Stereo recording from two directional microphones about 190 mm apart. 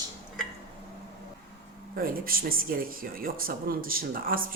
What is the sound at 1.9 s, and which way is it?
Speech, 50° right (ahead or behind).